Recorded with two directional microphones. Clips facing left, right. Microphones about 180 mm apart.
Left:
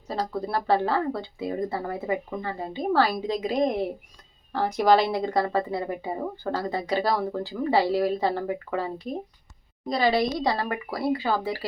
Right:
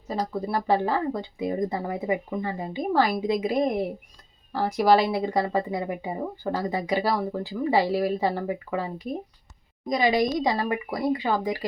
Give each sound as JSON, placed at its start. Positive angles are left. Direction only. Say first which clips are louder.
{"t": 0.1, "sound": "speech", "louder": "right 1 dB", "side_deg": -10}